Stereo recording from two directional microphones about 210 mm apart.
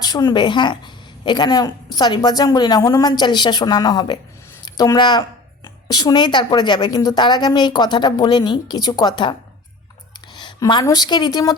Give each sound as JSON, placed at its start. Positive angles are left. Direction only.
{"t": 0.0, "sound": "a woman's voice", "side_deg": 20}
{"t": 10.3, "sound": "a woman's voice", "side_deg": 20}